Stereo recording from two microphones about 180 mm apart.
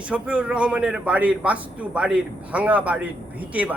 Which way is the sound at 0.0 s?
5° right (ahead or behind).